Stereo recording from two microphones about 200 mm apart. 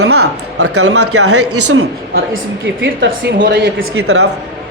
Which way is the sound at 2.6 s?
75° right (ahead or behind).